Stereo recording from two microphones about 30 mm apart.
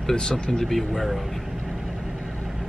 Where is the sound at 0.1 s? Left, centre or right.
Left.